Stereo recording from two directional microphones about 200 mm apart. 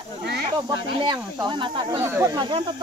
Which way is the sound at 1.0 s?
25° right (ahead or behind).